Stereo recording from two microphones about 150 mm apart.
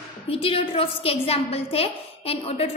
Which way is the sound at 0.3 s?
40° left (ahead or behind).